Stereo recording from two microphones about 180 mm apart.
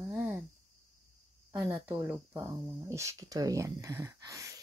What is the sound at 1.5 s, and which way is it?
Speech, 10° right (ahead or behind).